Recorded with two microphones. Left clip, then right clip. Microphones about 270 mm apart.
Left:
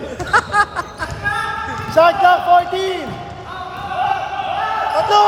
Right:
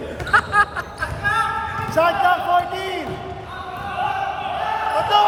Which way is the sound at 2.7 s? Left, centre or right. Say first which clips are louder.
Left 5 dB; left.